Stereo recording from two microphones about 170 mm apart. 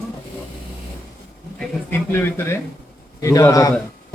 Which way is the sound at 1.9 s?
10° left (ahead or behind).